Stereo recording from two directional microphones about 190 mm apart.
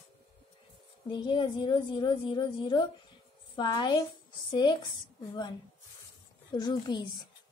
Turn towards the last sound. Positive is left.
turn(degrees=20)  # may be behind; listen again after turning